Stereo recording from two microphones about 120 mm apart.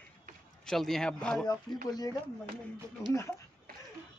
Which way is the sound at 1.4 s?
35° left (ahead or behind).